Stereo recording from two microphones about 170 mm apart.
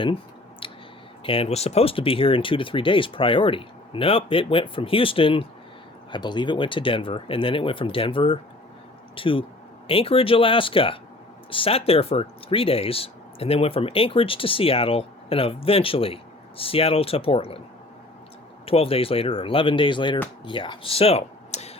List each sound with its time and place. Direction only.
0.6 s a sound: 30° left (ahead or behind)
1.2 s speech: 35° left (ahead or behind)
18.6 s speech: 35° left (ahead or behind)